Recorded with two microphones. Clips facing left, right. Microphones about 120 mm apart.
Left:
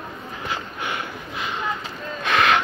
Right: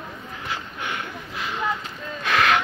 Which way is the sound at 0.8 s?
10° left (ahead or behind).